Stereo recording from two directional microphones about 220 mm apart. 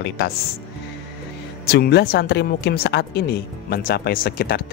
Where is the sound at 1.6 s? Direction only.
45° left (ahead or behind).